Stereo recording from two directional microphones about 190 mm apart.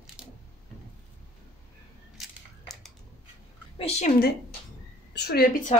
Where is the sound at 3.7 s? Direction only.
35° left (ahead or behind).